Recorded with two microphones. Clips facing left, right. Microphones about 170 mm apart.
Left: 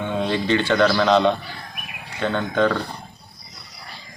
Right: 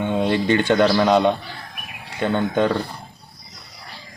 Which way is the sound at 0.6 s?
15° right (ahead or behind).